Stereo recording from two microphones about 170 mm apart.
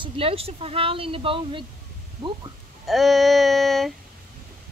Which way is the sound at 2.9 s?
Centre (ahead or behind).